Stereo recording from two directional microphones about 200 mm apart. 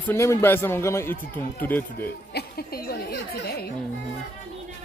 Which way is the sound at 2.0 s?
50° left (ahead or behind).